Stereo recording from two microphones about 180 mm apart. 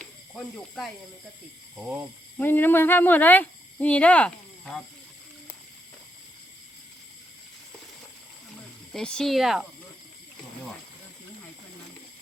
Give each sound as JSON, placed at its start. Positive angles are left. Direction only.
{"t": 0.0, "sound": "snake", "side_deg": 0}
{"t": 1.8, "sound": "speech", "side_deg": -10}
{"t": 2.4, "sound": "speech", "side_deg": 10}
{"t": 8.9, "sound": "speech", "side_deg": 5}